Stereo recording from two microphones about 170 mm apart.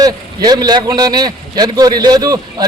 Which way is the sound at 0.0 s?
25° right (ahead or behind).